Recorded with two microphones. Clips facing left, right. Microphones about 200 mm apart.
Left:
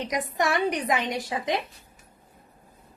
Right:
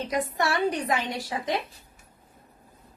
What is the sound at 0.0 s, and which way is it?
Speech, 15° left (ahead or behind).